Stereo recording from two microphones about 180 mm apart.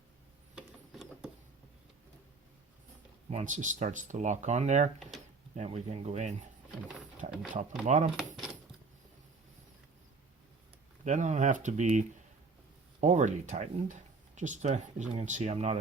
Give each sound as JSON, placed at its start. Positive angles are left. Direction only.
{"t": 0.5, "sound": "a sound", "side_deg": -5}
{"t": 3.2, "sound": "speech", "side_deg": -40}
{"t": 11.0, "sound": "speech", "side_deg": -40}